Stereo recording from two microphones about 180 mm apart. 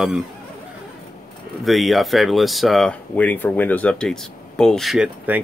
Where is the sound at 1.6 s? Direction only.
Centre (ahead or behind).